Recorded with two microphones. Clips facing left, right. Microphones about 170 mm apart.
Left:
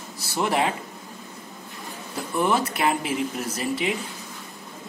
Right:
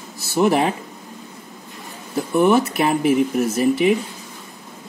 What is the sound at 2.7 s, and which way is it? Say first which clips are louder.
Speech: right 7 dB; 25° right (ahead or behind).